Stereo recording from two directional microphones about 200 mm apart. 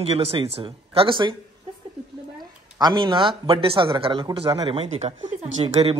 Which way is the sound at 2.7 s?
20° right (ahead or behind).